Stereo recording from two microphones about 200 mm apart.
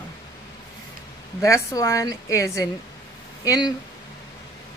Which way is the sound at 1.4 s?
15° left (ahead or behind).